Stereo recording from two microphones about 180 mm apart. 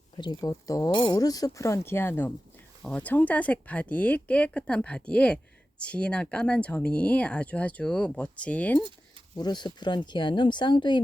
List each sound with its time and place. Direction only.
0.2 s speech: 20° left (ahead or behind)
9.3 s speech: 25° left (ahead or behind)